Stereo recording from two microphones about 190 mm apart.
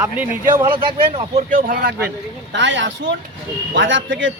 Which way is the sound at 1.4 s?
50° right (ahead or behind).